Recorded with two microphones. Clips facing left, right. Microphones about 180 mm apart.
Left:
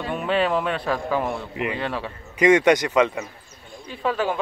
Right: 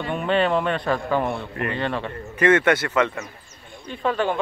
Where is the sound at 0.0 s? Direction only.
5° left (ahead or behind).